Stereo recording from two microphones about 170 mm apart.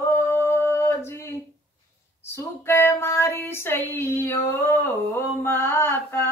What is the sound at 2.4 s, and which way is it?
Female singing, 15° left (ahead or behind).